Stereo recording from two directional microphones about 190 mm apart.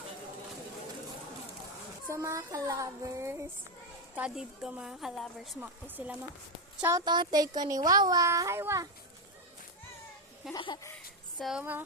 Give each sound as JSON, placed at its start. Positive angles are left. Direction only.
{"t": 2.0, "sound": "child singing", "side_deg": -15}
{"t": 4.1, "sound": "a woman's voice", "side_deg": -5}
{"t": 5.5, "sound": "child singing", "side_deg": -10}
{"t": 6.7, "sound": "speech", "side_deg": -15}
{"t": 10.5, "sound": "speech", "side_deg": 20}
{"t": 10.9, "sound": "a sound", "side_deg": 0}